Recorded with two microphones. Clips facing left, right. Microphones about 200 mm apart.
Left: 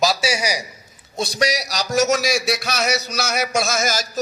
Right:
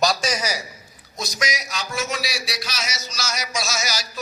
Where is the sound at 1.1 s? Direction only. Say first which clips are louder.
Left 7 dB; 30° left (ahead or behind).